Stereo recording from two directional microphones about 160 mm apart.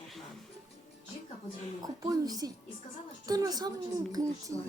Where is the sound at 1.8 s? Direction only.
20° right (ahead or behind).